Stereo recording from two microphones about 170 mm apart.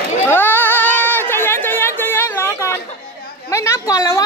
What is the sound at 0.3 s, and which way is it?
Chatter, 10° left (ahead or behind).